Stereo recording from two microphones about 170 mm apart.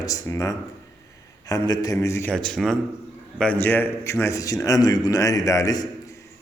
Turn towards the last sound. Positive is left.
turn(degrees=20)  # may be behind; listen again after turning